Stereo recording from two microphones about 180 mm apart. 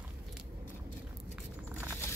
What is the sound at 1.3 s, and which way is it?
Walk, 10° right (ahead or behind).